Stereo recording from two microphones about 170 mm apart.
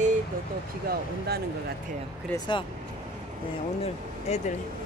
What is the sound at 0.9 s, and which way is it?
Speech, 65° right (ahead or behind).